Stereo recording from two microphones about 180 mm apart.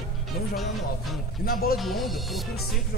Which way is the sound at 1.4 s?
55° left (ahead or behind).